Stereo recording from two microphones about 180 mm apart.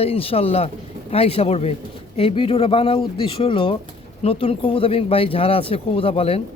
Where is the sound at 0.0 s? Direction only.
30° left (ahead or behind).